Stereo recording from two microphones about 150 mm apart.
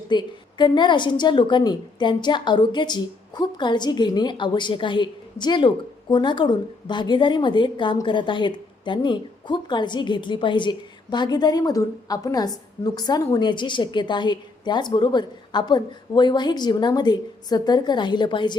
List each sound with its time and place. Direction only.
0.1 s a woman's voice: 30° left (ahead or behind)